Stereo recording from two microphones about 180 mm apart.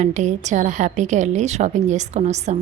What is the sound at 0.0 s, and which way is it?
Speech, 40° right (ahead or behind).